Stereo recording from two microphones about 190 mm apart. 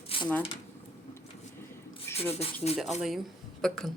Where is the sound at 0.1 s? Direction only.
30° left (ahead or behind).